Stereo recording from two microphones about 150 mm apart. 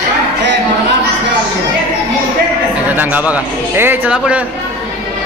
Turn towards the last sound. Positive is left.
turn(degrees=-10)  # may be behind; listen again after turning